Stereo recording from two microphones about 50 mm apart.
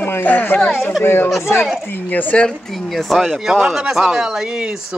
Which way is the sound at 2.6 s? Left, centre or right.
Centre.